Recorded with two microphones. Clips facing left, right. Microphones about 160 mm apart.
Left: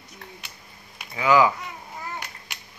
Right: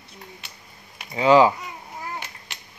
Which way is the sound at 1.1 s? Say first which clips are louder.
Right 4 dB; 30° right (ahead or behind).